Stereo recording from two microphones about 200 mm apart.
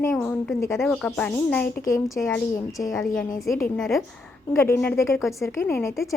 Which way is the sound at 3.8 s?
Centre (ahead or behind).